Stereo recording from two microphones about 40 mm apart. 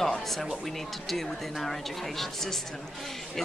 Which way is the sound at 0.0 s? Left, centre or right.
Centre.